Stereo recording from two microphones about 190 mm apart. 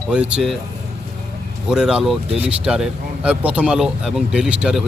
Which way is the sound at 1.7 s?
5° right (ahead or behind).